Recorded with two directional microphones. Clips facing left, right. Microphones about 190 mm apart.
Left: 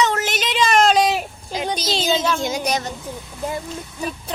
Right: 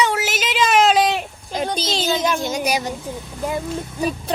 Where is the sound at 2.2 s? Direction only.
15° right (ahead or behind).